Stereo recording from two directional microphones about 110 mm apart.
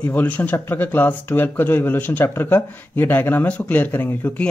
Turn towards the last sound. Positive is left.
turn(degrees=15)  # may be behind; listen again after turning